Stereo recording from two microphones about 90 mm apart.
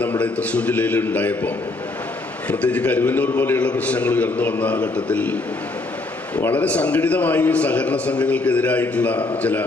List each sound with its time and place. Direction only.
0.0 s a man's voice: 15° left (ahead or behind)